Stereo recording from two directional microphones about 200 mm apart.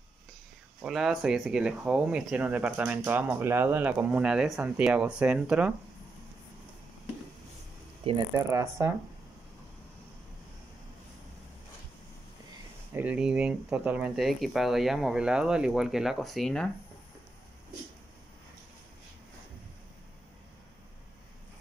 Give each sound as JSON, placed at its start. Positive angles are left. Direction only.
{"t": 0.8, "sound": "speech", "side_deg": 0}
{"t": 8.0, "sound": "speech", "side_deg": -25}
{"t": 8.5, "sound": "speech", "side_deg": -15}
{"t": 12.9, "sound": "speech", "side_deg": -5}